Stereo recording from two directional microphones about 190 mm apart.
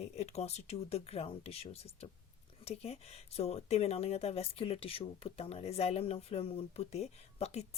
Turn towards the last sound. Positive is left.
turn(degrees=35)  # may be behind; listen again after turning